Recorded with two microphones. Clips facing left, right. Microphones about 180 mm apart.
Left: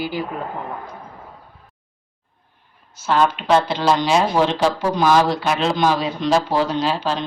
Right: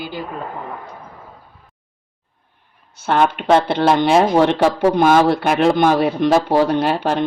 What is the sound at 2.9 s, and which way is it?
Speech, 60° right (ahead or behind).